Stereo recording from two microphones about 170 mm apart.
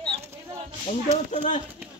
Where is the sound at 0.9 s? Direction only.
45° left (ahead or behind).